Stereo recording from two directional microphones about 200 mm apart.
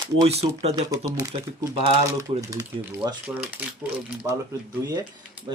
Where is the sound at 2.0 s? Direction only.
15° right (ahead or behind).